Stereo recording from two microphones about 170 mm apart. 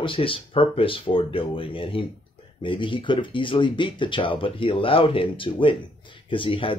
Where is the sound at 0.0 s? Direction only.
30° left (ahead or behind).